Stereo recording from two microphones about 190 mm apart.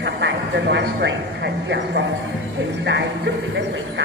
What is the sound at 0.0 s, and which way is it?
Speech, 70° right (ahead or behind).